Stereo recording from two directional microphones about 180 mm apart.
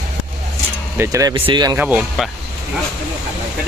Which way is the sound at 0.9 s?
15° right (ahead or behind).